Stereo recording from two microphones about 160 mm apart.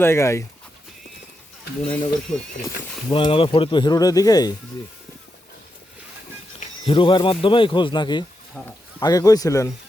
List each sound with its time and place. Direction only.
0.0 s speech: 15° left (ahead or behind)
1.8 s speech: 5° left (ahead or behind)
3.1 s speech: 35° left (ahead or behind)
6.8 s speech: 35° left (ahead or behind)